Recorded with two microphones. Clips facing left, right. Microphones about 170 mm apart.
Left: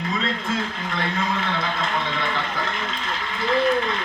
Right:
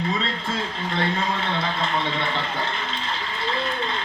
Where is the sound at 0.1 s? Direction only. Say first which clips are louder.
Left 1 dB; 30° right (ahead or behind).